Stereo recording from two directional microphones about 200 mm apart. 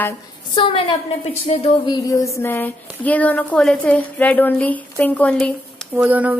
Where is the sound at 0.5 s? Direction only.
25° left (ahead or behind); by 6.0 s 5° left (ahead or behind).